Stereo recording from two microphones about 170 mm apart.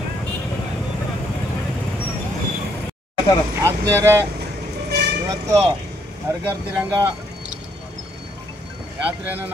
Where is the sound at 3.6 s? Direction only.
15° right (ahead or behind).